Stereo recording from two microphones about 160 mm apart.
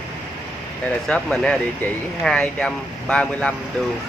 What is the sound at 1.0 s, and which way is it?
Speech, 5° left (ahead or behind).